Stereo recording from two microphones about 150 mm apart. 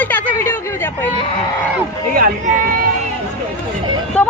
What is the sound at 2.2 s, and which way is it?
Speech, 65° right (ahead or behind).